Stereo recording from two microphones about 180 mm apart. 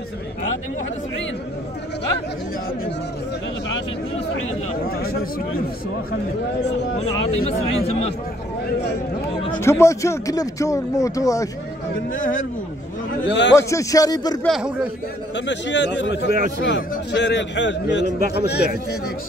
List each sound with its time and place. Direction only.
7.0 s speech: 35° left (ahead or behind)
9.6 s speech: 15° left (ahead or behind)
13.3 s speech: 75° left (ahead or behind)
13.6 s speech: 15° left (ahead or behind)
14.4 s speech: 5° right (ahead or behind)
15.3 s speech: 85° left; by 16.4 s 65° left (ahead or behind)
16.6 s speech: 75° left (ahead or behind)
18.3 s a man's voice: 65° left (ahead or behind)